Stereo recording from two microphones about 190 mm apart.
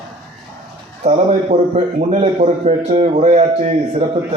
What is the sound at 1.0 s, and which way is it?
A man's voice, 35° right (ahead or behind).